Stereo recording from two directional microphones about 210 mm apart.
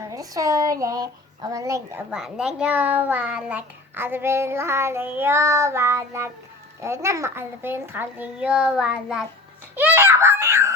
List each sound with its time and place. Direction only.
0.0 s speech: 15° right (ahead or behind)
2.0 s a child's voice: centre (ahead or behind)
9.7 s wail: 10° right (ahead or behind)